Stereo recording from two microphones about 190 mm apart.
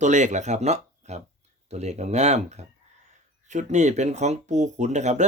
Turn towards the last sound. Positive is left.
turn(degrees=-40)  # may be behind; listen again after turning